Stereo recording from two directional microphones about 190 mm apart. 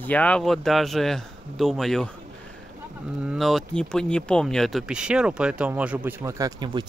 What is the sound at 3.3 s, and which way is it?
Speech, centre (ahead or behind).